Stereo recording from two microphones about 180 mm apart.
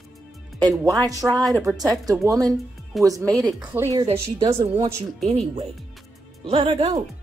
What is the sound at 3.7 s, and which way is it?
Speech, 15° right (ahead or behind).